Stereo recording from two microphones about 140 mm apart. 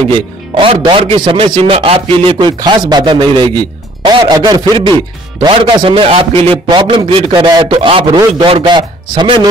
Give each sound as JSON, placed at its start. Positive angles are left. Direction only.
{"t": 0.6, "sound": "a man's voice", "side_deg": -40}